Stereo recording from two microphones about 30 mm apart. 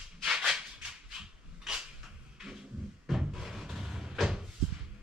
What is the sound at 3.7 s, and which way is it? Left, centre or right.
Vehicle, centre.